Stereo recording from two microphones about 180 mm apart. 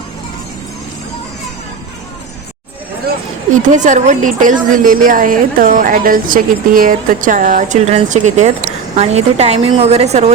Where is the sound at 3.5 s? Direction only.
45° right (ahead or behind).